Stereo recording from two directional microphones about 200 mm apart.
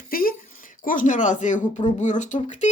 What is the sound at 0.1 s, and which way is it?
Speech, 45° left (ahead or behind).